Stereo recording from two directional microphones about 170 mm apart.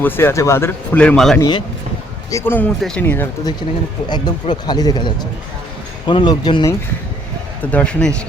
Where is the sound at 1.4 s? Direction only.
25° left (ahead or behind).